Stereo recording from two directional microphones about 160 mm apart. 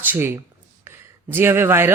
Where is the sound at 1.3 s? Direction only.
15° right (ahead or behind).